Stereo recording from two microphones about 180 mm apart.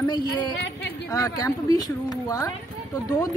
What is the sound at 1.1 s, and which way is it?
A woman's voice, 20° left (ahead or behind).